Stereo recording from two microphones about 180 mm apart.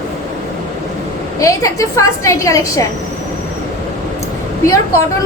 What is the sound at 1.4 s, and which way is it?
A woman's voice, 20° left (ahead or behind).